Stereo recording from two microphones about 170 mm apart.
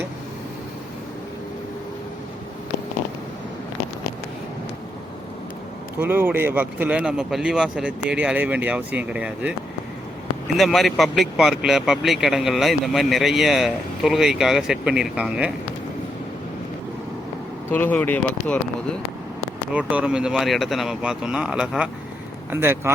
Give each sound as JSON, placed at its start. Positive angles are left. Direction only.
{"t": 6.0, "sound": "speech", "side_deg": -10}
{"t": 10.6, "sound": "speech", "side_deg": 0}
{"t": 17.7, "sound": "speech", "side_deg": 10}
{"t": 19.7, "sound": "speech", "side_deg": -10}